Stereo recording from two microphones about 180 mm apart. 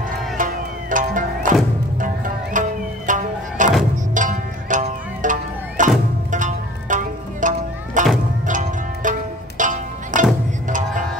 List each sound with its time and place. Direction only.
0.4 s music: 45° right (ahead or behind)